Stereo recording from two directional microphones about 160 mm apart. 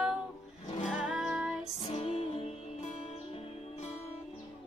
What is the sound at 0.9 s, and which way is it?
Music, 5° right (ahead or behind).